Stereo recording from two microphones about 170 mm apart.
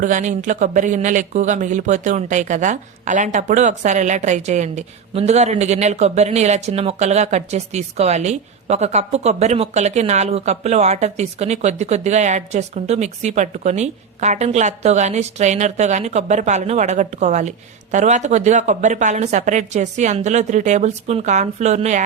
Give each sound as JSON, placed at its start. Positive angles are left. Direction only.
{"t": 0.0, "sound": "speech", "side_deg": -45}